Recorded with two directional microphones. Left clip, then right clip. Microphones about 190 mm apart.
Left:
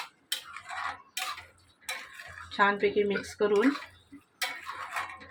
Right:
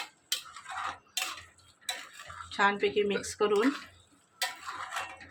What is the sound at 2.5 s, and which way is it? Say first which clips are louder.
Speech: left 2 dB; 10° left (ahead or behind).